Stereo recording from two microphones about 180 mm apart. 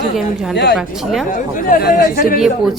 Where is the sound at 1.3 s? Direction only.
50° left (ahead or behind).